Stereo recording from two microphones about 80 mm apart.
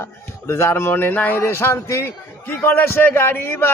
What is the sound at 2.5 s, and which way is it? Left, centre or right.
A man's voice, left.